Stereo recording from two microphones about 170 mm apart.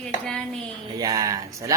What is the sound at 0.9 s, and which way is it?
Speech, 20° right (ahead or behind).